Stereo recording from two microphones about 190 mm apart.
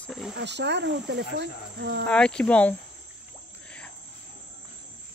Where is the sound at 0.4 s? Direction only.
65° right (ahead or behind).